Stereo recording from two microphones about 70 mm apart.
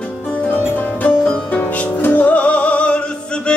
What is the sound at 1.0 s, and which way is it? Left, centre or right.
Music, left.